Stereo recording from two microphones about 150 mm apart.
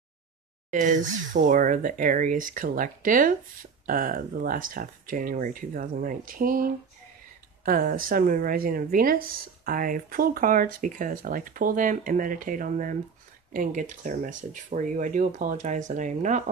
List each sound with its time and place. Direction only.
0.7 s speech: 55° right (ahead or behind)